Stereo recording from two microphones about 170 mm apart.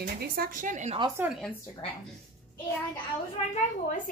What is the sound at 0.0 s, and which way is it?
Speech, 55° right (ahead or behind).